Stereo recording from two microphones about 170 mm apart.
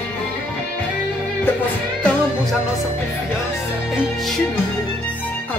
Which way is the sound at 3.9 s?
Centre (ahead or behind).